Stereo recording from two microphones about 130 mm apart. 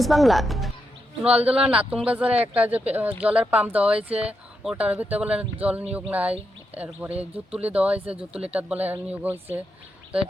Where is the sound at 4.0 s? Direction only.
50° right (ahead or behind).